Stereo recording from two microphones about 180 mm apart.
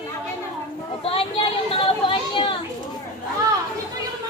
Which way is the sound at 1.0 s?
30° left (ahead or behind).